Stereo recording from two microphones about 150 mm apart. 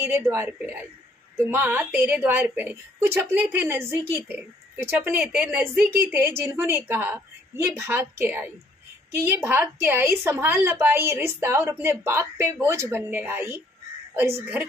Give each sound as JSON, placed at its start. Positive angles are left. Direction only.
{"t": 0.0, "sound": "a woman's voice", "side_deg": -15}